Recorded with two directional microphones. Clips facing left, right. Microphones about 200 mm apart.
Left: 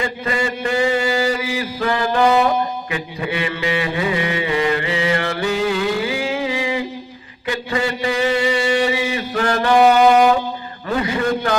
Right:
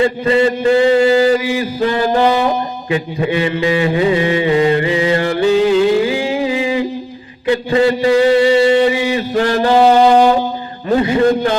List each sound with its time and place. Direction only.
0.0 s mantra: 25° right (ahead or behind)
2.9 s music: 30° right (ahead or behind)
7.4 s a man's voice: 30° right (ahead or behind)
8.7 s music: 25° right (ahead or behind)
10.9 s mantra: 30° right (ahead or behind)